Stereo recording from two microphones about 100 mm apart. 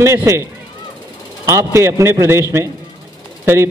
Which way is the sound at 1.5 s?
30° right (ahead or behind).